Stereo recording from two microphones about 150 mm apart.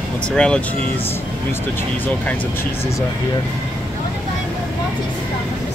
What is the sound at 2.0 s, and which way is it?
Speech, 10° left (ahead or behind).